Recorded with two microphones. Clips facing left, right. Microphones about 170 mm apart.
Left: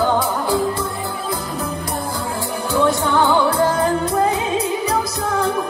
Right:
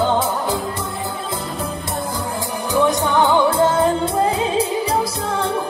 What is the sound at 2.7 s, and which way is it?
Music, 20° right (ahead or behind).